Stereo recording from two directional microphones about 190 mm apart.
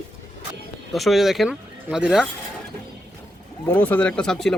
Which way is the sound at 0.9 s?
Centre (ahead or behind).